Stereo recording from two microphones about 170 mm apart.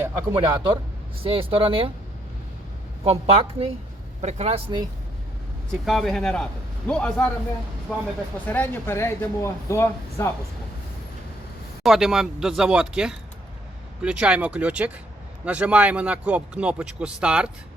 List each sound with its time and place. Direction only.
0.0 s a sound: 15° right (ahead or behind)
0.3 s speech: 30° right (ahead or behind)
3.0 s speech: 35° right (ahead or behind)
5.8 s a man's voice: centre (ahead or behind)
8.4 s speech: 10° left (ahead or behind)
11.8 s a man's voice: centre (ahead or behind)